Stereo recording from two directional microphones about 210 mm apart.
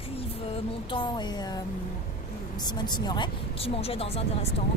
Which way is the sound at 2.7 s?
20° left (ahead or behind).